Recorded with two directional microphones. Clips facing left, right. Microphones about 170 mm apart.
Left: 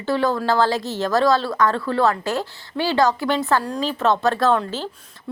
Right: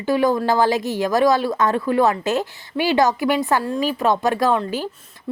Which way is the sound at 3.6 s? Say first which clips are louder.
Right 1 dB; 5° right (ahead or behind).